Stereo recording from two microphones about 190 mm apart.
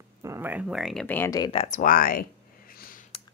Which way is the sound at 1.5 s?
35° left (ahead or behind).